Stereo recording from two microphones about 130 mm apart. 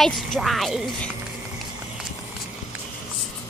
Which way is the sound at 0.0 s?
Centre (ahead or behind).